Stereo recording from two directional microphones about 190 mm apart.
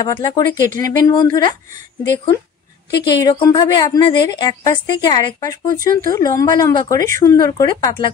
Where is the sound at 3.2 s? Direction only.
20° left (ahead or behind).